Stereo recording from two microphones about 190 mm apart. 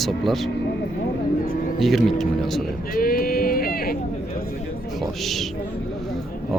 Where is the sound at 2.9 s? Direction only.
50° left (ahead or behind).